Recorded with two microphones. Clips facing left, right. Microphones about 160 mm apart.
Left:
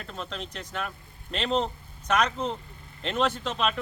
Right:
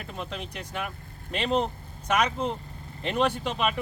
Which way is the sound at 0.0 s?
10° right (ahead or behind).